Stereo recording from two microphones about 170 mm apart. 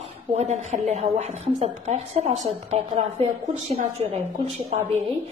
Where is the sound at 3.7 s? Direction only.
35° right (ahead or behind).